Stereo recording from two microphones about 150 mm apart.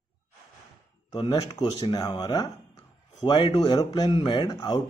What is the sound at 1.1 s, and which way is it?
Speech, 35° left (ahead or behind).